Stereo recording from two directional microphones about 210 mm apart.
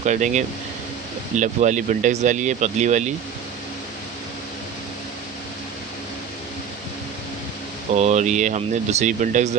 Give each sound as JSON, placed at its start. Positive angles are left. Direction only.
{"t": 0.0, "sound": "speech", "side_deg": -35}
{"t": 7.9, "sound": "speech", "side_deg": -35}